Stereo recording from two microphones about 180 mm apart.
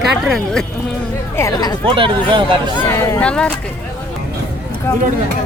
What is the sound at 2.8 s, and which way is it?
Speech, 15° left (ahead or behind).